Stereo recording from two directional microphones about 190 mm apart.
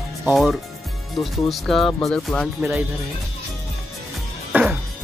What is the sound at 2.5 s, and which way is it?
Speech, 10° right (ahead or behind).